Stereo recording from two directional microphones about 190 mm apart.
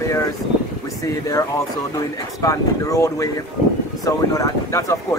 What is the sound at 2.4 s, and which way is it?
Speech, 15° left (ahead or behind).